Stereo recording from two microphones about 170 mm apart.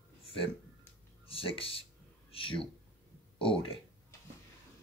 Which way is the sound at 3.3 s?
30° left (ahead or behind).